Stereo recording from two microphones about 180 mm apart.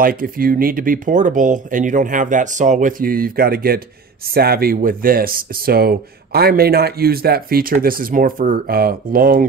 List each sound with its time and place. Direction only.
0.0 s speech: 55° right (ahead or behind)